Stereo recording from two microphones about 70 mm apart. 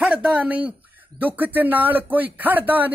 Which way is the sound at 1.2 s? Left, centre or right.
Right.